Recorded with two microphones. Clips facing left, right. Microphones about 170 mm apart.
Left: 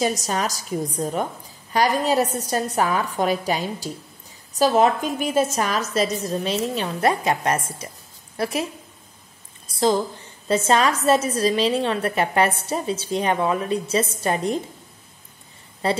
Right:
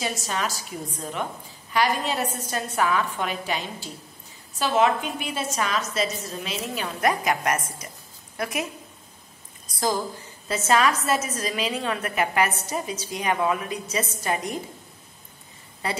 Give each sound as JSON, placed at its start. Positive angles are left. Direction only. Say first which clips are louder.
{"t": 0.0, "sound": "a woman's voice", "louder": "left 5 dB", "side_deg": 40}
{"t": 9.7, "sound": "a sound", "louder": "left 6 dB", "side_deg": 25}
{"t": 10.5, "sound": "a woman's voice", "louder": "left 3 dB", "side_deg": 30}
{"t": 15.8, "sound": "a woman's voice", "louder": "left 7 dB", "side_deg": 30}